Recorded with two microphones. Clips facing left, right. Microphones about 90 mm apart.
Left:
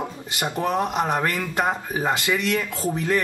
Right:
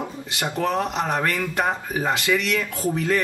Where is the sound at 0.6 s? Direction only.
20° left (ahead or behind).